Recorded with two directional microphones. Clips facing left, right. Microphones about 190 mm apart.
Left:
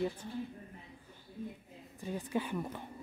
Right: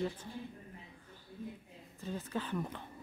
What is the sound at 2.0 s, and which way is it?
Speech, 15° left (ahead or behind).